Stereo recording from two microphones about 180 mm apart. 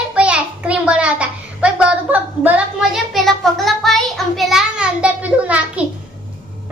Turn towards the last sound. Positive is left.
turn(degrees=-10)  # may be behind; listen again after turning